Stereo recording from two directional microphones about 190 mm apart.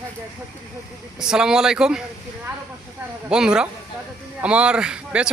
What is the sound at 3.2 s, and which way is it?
A man's voice, 5° right (ahead or behind).